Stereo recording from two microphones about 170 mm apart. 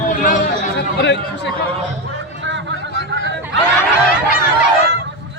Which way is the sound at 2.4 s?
90° right.